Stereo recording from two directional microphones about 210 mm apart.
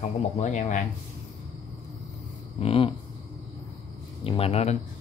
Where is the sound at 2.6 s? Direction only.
25° left (ahead or behind).